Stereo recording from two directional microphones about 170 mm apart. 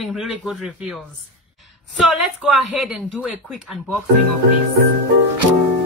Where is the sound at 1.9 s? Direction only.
Centre (ahead or behind).